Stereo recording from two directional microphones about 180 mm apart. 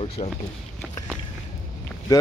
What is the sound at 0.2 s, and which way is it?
Speech, 55° left (ahead or behind).